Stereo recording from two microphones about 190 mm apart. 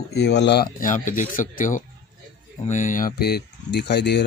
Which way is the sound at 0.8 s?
45° left (ahead or behind).